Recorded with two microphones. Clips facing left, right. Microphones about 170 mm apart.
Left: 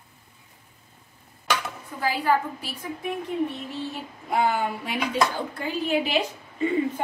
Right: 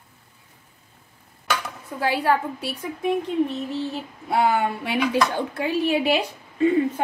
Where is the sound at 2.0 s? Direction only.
70° right (ahead or behind).